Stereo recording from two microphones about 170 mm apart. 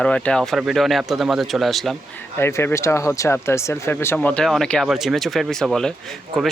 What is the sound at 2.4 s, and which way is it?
Speech, 15° left (ahead or behind).